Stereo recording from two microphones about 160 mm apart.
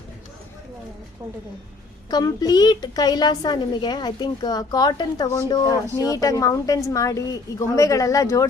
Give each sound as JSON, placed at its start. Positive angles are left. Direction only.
{"t": 2.0, "sound": "a woman's voice", "side_deg": 25}